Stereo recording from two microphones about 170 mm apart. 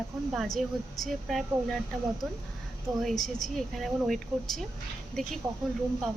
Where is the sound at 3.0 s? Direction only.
Centre (ahead or behind).